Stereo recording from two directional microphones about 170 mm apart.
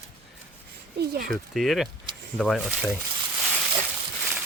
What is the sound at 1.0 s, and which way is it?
Speech, 65° right (ahead or behind).